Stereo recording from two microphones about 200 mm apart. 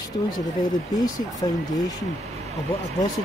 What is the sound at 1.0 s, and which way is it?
Speech, 20° left (ahead or behind).